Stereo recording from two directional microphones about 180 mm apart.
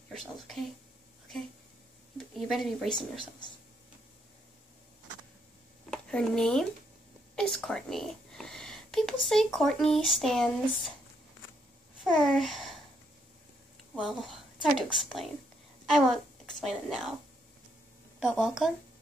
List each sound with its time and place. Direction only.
0.1 s speech: centre (ahead or behind)
2.1 s a woman's voice: centre (ahead or behind)
5.9 s speech: 5° left (ahead or behind)
12.0 s a child's voice: centre (ahead or behind)
13.9 s a woman's voice: centre (ahead or behind)
18.2 s a woman's voice: centre (ahead or behind)